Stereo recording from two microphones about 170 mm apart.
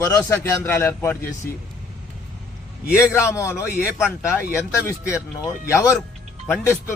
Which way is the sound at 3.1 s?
15° left (ahead or behind).